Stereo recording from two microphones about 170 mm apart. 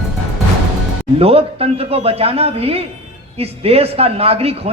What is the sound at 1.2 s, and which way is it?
A man's voice, 35° right (ahead or behind).